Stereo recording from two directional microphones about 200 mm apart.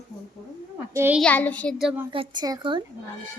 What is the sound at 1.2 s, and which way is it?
Child singing, 10° left (ahead or behind).